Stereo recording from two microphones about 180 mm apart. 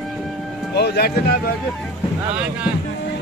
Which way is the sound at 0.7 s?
65° left (ahead or behind).